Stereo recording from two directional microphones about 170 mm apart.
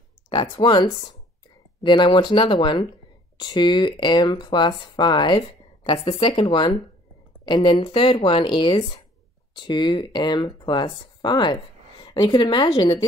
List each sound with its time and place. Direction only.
0.3 s speech: 25° left (ahead or behind)